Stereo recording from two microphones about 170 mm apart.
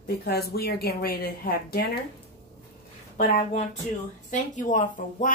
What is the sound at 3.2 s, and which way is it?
Speech, 45° left (ahead or behind).